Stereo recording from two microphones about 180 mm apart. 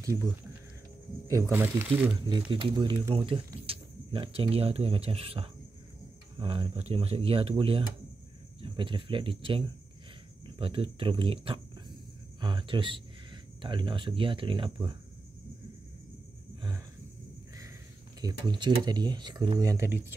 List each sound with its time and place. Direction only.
1.2 s speech: 15° right (ahead or behind)
2.2 s speech: 25° right (ahead or behind)
18.2 s speech: 25° right (ahead or behind)